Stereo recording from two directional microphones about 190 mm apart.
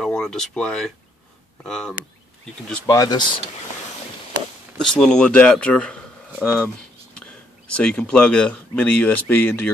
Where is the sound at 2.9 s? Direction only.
20° left (ahead or behind).